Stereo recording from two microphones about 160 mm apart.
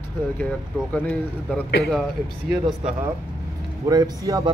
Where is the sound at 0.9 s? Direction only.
10° left (ahead or behind).